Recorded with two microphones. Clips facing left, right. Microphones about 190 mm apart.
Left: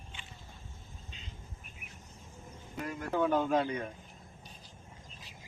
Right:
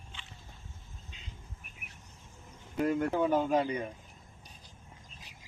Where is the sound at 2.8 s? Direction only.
65° right (ahead or behind).